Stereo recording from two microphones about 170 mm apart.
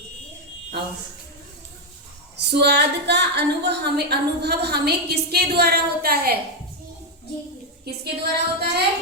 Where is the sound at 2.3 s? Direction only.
75° right (ahead or behind).